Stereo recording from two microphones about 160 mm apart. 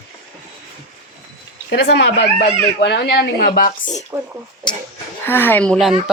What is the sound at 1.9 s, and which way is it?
Speech, 90° left.